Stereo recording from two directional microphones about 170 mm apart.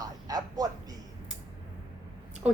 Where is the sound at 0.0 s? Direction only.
20° right (ahead or behind).